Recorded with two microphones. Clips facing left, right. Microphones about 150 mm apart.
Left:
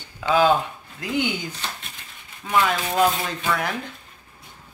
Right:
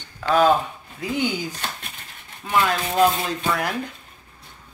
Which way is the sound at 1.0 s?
Centre (ahead or behind).